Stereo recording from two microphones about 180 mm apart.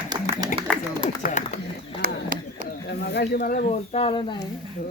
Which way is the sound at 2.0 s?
55° right (ahead or behind).